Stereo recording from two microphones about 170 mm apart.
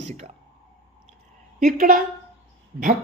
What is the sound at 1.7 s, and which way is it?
Speech, 55° right (ahead or behind).